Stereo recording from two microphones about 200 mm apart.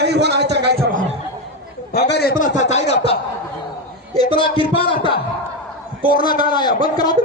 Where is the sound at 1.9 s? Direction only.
55° left (ahead or behind).